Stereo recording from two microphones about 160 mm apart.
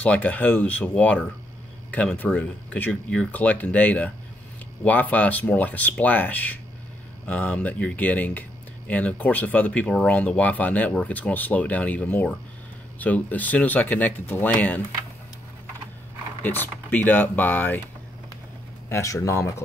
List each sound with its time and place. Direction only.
0.0 s speech: 10° left (ahead or behind)
16.4 s speech: 10° left (ahead or behind)
18.9 s speech: 20° left (ahead or behind)